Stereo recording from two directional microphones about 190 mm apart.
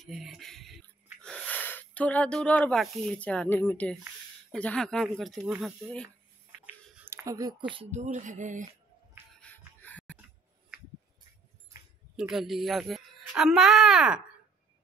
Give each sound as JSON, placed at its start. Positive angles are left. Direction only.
{"t": 0.0, "sound": "music", "side_deg": 0}
{"t": 1.2, "sound": "speech", "side_deg": 5}
{"t": 6.6, "sound": "a sound", "side_deg": -10}
{"t": 7.9, "sound": "speech", "side_deg": -40}
{"t": 9.4, "sound": "a sound", "side_deg": 10}
{"t": 12.2, "sound": "a woman's voice", "side_deg": 0}